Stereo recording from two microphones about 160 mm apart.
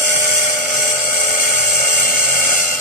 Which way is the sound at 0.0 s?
50° left (ahead or behind).